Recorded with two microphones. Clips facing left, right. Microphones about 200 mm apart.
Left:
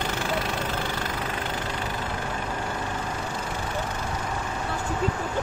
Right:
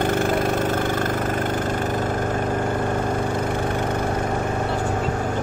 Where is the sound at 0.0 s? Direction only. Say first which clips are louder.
Right 8 dB; 50° right (ahead or behind).